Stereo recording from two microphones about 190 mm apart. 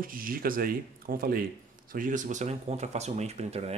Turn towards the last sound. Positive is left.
turn(degrees=-35)  # may be behind; listen again after turning